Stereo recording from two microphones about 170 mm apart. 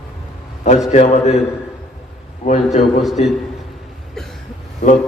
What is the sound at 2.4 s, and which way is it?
Speech, 45° left (ahead or behind).